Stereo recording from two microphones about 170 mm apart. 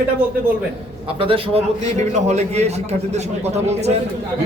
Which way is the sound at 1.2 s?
35° right (ahead or behind).